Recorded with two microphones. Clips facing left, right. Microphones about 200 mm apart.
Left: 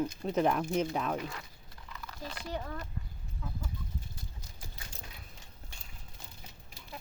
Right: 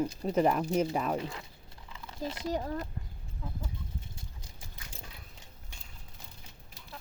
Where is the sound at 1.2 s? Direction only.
25° right (ahead or behind).